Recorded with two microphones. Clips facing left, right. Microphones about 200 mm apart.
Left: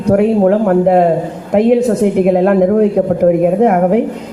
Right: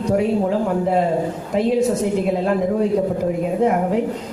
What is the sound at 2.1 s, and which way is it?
A man's voice, 65° left (ahead or behind).